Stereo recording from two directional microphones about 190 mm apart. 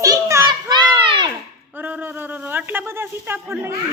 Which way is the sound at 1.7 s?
10° right (ahead or behind).